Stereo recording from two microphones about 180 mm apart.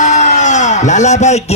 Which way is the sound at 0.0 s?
40° left (ahead or behind).